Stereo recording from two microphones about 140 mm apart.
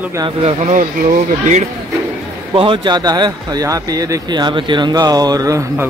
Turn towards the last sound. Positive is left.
turn(degrees=-25)  # may be behind; listen again after turning